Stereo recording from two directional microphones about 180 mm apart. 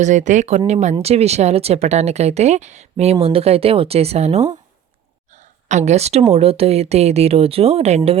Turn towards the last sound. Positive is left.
turn(degrees=-35)  # may be behind; listen again after turning